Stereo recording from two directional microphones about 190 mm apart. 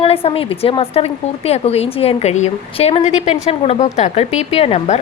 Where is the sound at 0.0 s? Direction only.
30° left (ahead or behind).